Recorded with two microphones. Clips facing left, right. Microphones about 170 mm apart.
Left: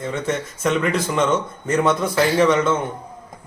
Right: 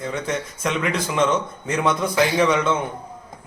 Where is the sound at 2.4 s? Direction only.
Centre (ahead or behind).